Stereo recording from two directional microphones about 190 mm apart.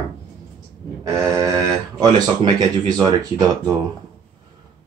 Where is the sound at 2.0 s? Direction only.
20° right (ahead or behind).